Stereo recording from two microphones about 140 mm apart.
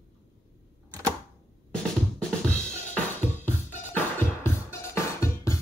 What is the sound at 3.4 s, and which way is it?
Music, 15° left (ahead or behind).